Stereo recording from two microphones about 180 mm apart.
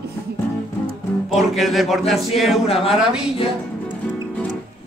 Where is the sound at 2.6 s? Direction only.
30° left (ahead or behind).